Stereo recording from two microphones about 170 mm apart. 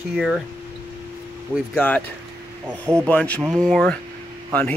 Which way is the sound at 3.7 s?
Centre (ahead or behind).